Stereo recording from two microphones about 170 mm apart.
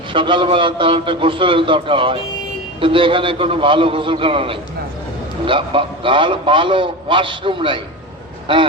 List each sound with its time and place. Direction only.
0.1 s a man's voice: 30° right (ahead or behind)